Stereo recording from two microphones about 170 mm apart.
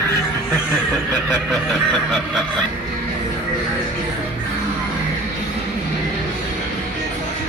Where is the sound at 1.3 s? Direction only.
Centre (ahead or behind).